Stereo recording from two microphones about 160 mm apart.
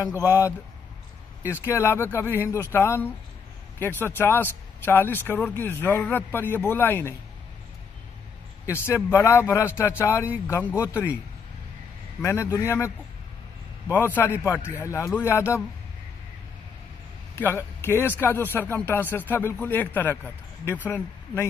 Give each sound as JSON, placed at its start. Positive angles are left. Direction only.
{"t": 0.2, "sound": "speech", "side_deg": 20}
{"t": 8.6, "sound": "speech", "side_deg": 15}
{"t": 12.2, "sound": "speech", "side_deg": 15}
{"t": 13.9, "sound": "speech", "side_deg": 15}
{"t": 17.4, "sound": "speech", "side_deg": 15}